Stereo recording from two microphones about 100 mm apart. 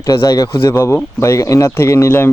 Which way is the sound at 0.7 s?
30° left (ahead or behind).